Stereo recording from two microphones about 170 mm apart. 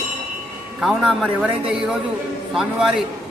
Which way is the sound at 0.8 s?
Centre (ahead or behind).